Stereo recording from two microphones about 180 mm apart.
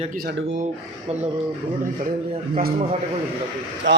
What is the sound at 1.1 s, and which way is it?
Speech, 35° right (ahead or behind).